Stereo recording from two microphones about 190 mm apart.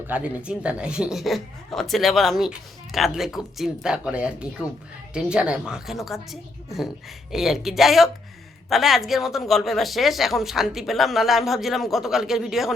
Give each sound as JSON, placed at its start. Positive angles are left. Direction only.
{"t": 0.1, "sound": "speech", "side_deg": -5}